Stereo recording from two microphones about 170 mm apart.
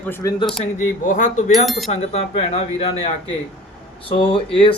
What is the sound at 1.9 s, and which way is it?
Speech, 40° left (ahead or behind).